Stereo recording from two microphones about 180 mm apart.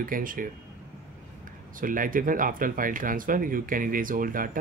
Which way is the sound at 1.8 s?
50° right (ahead or behind).